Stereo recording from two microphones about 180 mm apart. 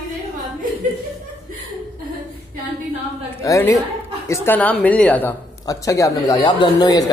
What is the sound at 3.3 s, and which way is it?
A woman's voice, 15° left (ahead or behind).